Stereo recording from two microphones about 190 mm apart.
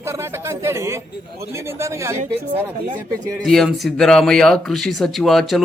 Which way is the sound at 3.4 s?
Centre (ahead or behind).